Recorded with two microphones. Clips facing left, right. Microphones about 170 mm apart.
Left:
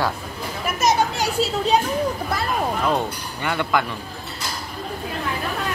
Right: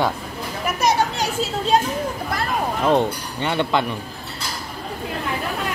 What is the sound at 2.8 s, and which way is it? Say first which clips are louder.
Speech: right 4 dB; 25° right (ahead or behind).